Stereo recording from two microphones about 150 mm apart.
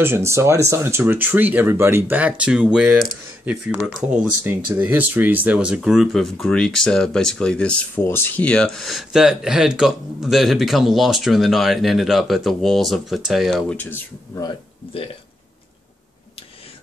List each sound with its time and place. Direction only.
0.0 s speech: 15° right (ahead or behind); by 13.7 s centre (ahead or behind)
14.3 s speech: 25° left (ahead or behind)